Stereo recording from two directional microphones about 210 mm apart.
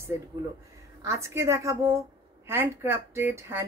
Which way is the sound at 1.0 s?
15° right (ahead or behind).